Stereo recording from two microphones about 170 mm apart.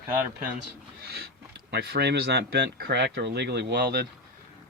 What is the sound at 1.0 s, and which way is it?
Speech, 70° right (ahead or behind).